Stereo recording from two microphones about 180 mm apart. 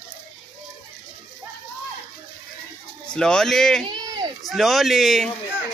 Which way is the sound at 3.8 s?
25° right (ahead or behind).